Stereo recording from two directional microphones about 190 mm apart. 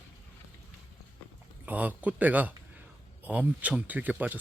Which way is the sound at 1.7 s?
10° right (ahead or behind).